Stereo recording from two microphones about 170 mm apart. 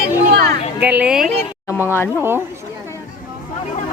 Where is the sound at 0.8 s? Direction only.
10° right (ahead or behind).